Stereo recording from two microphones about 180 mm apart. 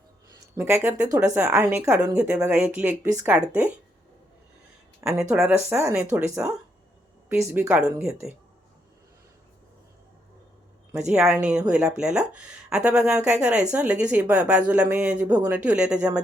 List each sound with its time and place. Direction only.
0.5 s a woman's voice: 15° right (ahead or behind)
5.3 s a woman's voice: 5° right (ahead or behind)
10.9 s speech: 5° right (ahead or behind)